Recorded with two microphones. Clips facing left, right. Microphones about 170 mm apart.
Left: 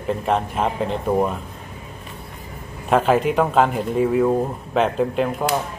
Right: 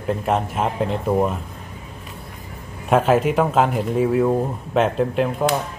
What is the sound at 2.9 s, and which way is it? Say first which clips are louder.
A man's voice: right 1 dB; centre (ahead or behind).